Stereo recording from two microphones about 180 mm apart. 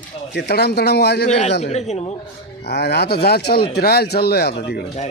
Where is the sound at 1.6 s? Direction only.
40° left (ahead or behind).